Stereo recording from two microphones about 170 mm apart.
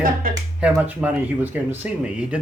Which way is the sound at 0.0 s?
55° right (ahead or behind).